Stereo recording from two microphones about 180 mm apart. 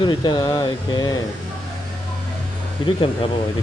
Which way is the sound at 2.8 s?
30° left (ahead or behind).